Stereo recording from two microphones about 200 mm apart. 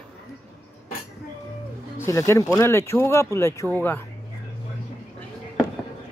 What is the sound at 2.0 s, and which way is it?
Speech, 15° left (ahead or behind).